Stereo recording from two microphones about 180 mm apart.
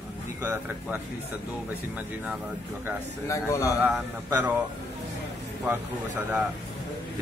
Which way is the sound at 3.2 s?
15° left (ahead or behind).